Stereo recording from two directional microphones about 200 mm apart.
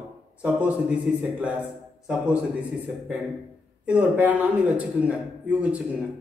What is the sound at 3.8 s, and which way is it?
A man's voice, 5° right (ahead or behind).